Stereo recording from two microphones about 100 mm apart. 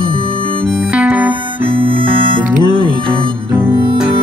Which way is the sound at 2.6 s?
50° left (ahead or behind).